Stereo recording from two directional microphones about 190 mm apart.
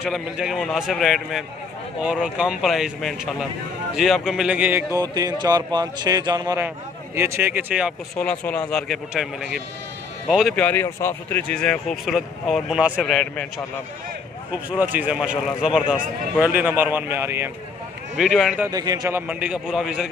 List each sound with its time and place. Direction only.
0.0 s speech: centre (ahead or behind)
8.2 s speech: 5° left (ahead or behind)
14.8 s speech: 10° right (ahead or behind)
18.1 s speech: centre (ahead or behind)
18.7 s speech: 20° right (ahead or behind); by 20.1 s 5° right (ahead or behind)